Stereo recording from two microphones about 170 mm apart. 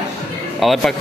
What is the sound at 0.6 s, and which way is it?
Speech, centre (ahead or behind).